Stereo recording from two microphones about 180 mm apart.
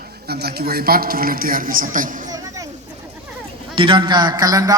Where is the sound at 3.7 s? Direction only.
30° right (ahead or behind).